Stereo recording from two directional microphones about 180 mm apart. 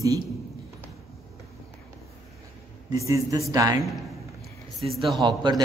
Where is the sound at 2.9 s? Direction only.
15° right (ahead or behind).